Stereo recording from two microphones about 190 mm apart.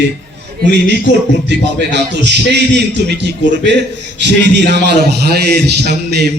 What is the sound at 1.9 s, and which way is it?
A man's voice, 65° right (ahead or behind).